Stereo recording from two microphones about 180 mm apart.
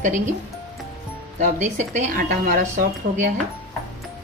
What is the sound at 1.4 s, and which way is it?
Speech, 40° right (ahead or behind).